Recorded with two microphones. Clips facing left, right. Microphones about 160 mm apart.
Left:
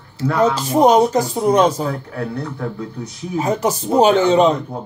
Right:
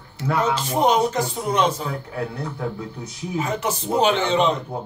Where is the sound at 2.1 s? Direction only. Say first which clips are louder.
Left 3 dB; 10° right (ahead or behind).